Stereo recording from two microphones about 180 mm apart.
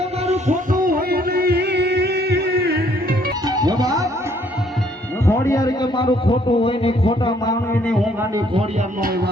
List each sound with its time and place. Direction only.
0.3 s a sound: 40° right (ahead or behind)
3.4 s music: 20° right (ahead or behind)
5.2 s a man's voice: 15° left (ahead or behind)
9.0 s speech: 55° right (ahead or behind)